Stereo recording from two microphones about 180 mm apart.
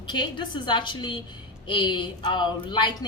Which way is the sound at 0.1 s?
25° left (ahead or behind).